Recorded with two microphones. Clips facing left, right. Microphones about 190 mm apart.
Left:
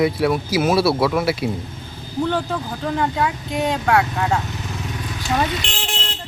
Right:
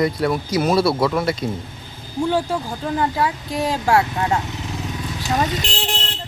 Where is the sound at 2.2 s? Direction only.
10° right (ahead or behind).